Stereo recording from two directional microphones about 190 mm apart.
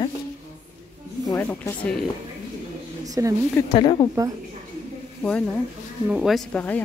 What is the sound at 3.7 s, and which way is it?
Speech, 25° left (ahead or behind).